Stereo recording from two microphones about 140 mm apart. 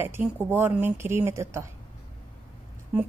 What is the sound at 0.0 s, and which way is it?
Speech, 15° right (ahead or behind).